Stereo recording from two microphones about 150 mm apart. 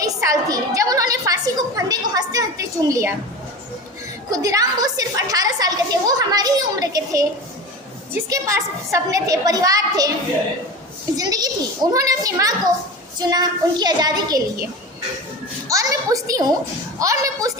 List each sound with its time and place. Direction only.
0.0 s a sound: 20° right (ahead or behind)
4.3 s a woman's voice: 25° right (ahead or behind)
11.2 s a woman's voice: 25° right (ahead or behind)
15.7 s a woman's voice: 20° right (ahead or behind)